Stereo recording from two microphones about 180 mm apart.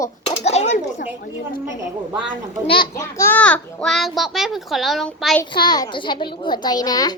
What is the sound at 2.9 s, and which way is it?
A child's voice, 15° left (ahead or behind).